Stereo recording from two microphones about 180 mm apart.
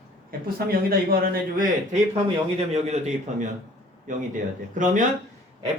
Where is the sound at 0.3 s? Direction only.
55° right (ahead or behind).